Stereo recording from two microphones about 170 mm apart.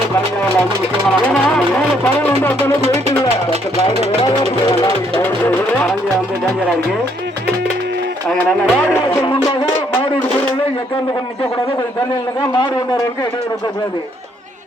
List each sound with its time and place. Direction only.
1.3 s music: 5° left (ahead or behind)
3.8 s speech: 35° left (ahead or behind)
4.7 s a man's voice: 20° left (ahead or behind)
5.1 s speech: 5° left (ahead or behind)
8.3 s music: 10° left (ahead or behind)
12.4 s a man's voice: 25° left (ahead or behind)